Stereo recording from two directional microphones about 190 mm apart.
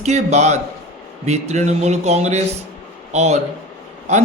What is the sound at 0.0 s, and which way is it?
Speech, 35° right (ahead or behind).